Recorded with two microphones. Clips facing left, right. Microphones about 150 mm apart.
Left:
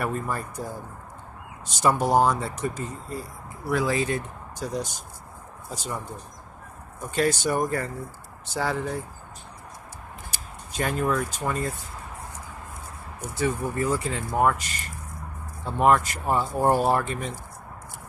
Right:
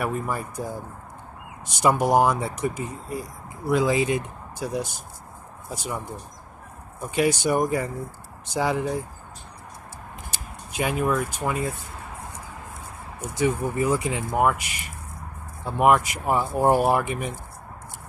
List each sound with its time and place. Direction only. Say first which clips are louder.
0.0 s speech: right 1 dB; 15° right (ahead or behind)
10.7 s speech: right 1 dB; 10° right (ahead or behind)
13.2 s speech: right 3 dB; 20° right (ahead or behind)